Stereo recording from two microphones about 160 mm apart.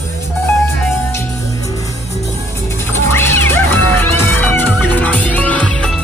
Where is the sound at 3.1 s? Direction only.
15° left (ahead or behind).